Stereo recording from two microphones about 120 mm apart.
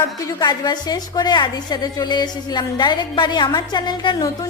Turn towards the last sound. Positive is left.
turn(degrees=40)  # may be behind; listen again after turning